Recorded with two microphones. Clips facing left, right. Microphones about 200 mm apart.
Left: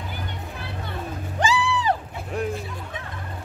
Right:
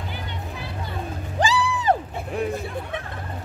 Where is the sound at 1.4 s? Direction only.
45° right (ahead or behind).